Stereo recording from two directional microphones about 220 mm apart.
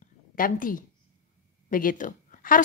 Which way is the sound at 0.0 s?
40° left (ahead or behind).